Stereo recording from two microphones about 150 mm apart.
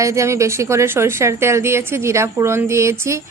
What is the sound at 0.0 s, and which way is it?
A woman's voice, 20° right (ahead or behind).